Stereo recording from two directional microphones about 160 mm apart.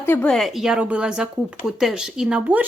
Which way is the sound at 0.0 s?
10° left (ahead or behind).